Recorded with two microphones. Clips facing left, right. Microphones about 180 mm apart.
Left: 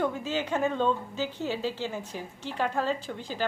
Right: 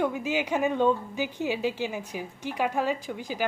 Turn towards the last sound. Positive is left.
turn(degrees=-10)  # may be behind; listen again after turning